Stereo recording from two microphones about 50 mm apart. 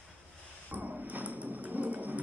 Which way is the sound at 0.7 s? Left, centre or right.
Right.